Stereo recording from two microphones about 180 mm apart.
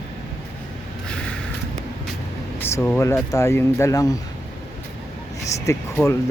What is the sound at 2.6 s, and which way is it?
Speech, 10° left (ahead or behind).